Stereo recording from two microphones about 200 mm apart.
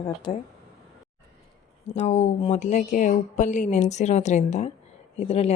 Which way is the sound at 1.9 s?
35° left (ahead or behind).